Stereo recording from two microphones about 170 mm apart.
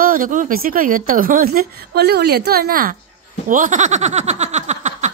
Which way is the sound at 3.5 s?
50° right (ahead or behind).